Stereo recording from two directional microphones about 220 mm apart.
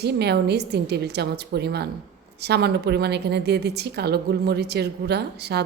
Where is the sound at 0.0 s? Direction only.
50° right (ahead or behind).